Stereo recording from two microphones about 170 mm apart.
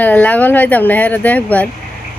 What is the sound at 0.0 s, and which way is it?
A woman's voice, 10° left (ahead or behind).